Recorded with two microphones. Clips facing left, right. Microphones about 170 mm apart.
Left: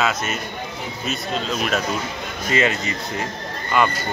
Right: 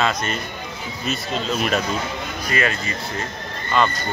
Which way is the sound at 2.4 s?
20° left (ahead or behind).